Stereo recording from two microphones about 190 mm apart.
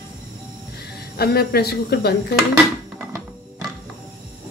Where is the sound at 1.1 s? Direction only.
55° left (ahead or behind).